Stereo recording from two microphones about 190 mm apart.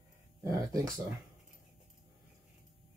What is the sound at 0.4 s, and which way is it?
Speech, 15° right (ahead or behind).